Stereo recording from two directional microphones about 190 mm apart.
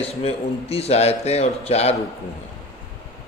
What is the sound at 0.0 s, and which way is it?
Speech, 30° left (ahead or behind).